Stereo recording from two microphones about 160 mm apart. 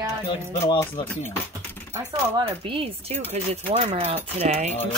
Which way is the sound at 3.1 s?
45° right (ahead or behind).